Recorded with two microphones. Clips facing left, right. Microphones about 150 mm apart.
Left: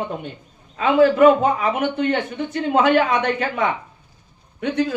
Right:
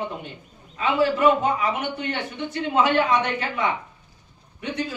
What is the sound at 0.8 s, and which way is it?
A man's voice, 55° left (ahead or behind).